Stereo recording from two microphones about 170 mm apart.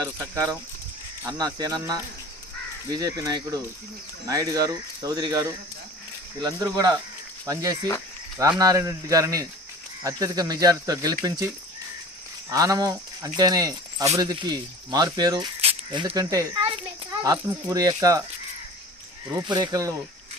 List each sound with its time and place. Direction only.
1.2 s speech: 20° right (ahead or behind)
15.6 s a sound: 25° right (ahead or behind)
16.0 s a child's voice: 20° right (ahead or behind)
17.3 s speech: 10° right (ahead or behind)
17.7 s speech: 20° right (ahead or behind)
19.3 s speech: 25° right (ahead or behind)